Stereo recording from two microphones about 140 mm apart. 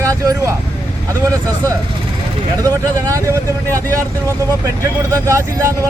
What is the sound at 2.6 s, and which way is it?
Speech, 25° right (ahead or behind).